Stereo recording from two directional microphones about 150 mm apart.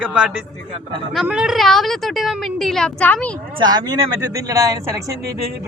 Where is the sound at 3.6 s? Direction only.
30° right (ahead or behind).